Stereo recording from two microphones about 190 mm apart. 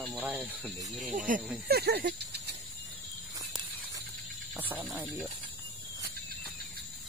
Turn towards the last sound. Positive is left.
turn(degrees=-10)  # may be behind; listen again after turning